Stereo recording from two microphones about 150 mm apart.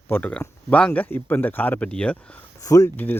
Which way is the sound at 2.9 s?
10° left (ahead or behind).